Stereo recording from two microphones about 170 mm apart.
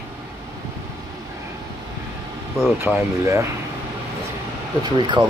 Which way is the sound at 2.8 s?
15° right (ahead or behind).